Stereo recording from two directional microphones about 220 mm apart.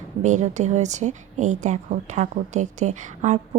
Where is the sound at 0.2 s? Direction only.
35° right (ahead or behind).